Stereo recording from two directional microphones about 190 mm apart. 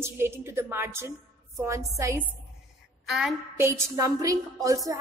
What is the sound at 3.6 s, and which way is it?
A woman's voice, 15° right (ahead or behind).